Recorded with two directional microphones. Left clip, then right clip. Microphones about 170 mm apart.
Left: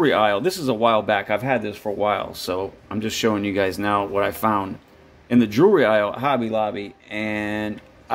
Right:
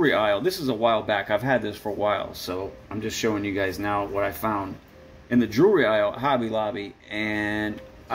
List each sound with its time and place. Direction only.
0.0 s speech: 45° left (ahead or behind)
2.4 s speech: 60° left (ahead or behind); by 7.7 s 35° left (ahead or behind)